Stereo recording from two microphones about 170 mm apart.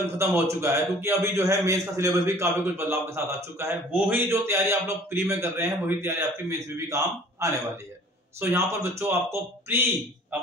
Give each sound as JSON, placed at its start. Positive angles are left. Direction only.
{"t": 0.0, "sound": "a man's voice", "side_deg": -15}